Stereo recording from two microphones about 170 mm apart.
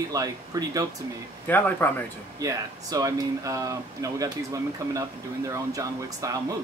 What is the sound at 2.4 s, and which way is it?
Speech, 20° right (ahead or behind).